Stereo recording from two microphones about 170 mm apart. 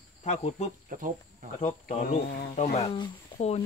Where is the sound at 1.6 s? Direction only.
40° left (ahead or behind).